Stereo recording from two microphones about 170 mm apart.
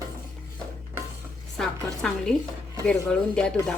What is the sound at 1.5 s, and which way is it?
A woman's voice, 5° left (ahead or behind).